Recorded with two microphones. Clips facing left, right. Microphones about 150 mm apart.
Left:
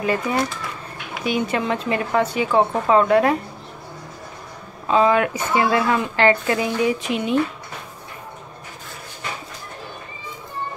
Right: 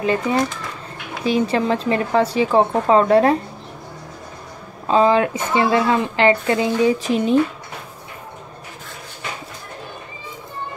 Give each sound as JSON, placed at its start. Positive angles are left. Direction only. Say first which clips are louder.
{"t": 0.0, "sound": "a woman's voice", "louder": "right 2 dB", "side_deg": -25}
{"t": 4.8, "sound": "a woman's voice", "louder": "right 2 dB", "side_deg": -30}